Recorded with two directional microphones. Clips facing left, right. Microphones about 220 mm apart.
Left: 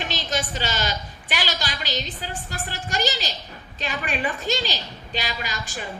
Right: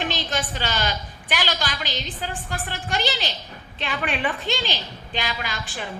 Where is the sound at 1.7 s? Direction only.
45° left (ahead or behind).